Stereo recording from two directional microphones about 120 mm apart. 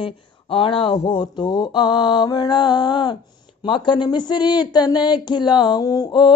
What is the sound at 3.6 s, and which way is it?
Speech, 45° left (ahead or behind).